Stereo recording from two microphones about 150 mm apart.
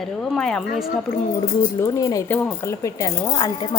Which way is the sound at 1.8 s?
20° left (ahead or behind).